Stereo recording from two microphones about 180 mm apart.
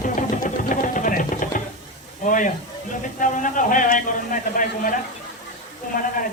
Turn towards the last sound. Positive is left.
turn(degrees=50)  # may be behind; listen again after turning